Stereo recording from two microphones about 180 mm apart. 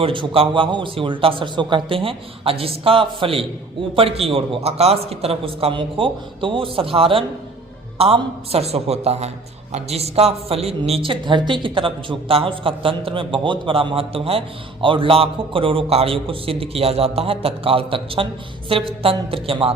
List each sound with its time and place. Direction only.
0.0 s a man's voice: 30° right (ahead or behind)